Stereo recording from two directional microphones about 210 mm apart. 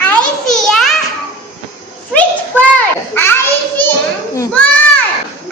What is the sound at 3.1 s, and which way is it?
Children playing, 10° left (ahead or behind).